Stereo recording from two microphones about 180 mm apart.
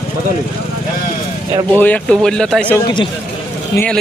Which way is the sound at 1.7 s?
10° left (ahead or behind).